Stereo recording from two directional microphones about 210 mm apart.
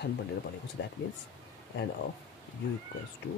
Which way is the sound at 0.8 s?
60° left (ahead or behind).